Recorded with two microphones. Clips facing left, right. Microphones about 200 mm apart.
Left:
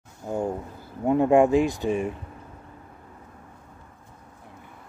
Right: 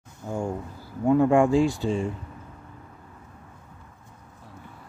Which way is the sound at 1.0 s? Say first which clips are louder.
Even; 20° left (ahead or behind).